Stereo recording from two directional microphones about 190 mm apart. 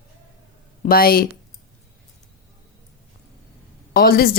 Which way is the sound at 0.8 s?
50° left (ahead or behind).